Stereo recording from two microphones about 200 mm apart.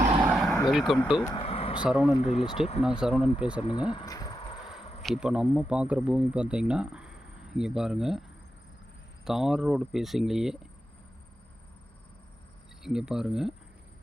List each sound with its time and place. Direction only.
0.3 s vehicle: 5° right (ahead or behind)
1.2 s vehicle: 25° left (ahead or behind)
1.8 s speech: 5° right (ahead or behind)
2.1 s speech: 30° left (ahead or behind)
2.8 s speech: 5° right (ahead or behind)
3.9 s a sound: 20° left (ahead or behind)
4.8 s insect: 30° left (ahead or behind)
5.0 s speech: 5° right (ahead or behind)
9.2 s speech: centre (ahead or behind)
12.8 s speech: 5° right (ahead or behind)